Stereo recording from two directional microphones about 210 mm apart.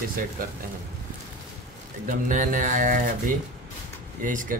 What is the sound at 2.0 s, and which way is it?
Speech, 40° right (ahead or behind).